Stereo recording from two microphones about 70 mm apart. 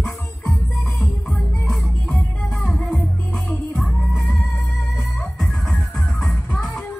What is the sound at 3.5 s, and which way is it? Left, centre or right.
Music, left.